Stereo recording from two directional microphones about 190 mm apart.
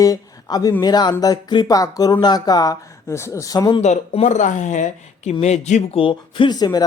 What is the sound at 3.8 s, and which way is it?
Speech, 35° left (ahead or behind).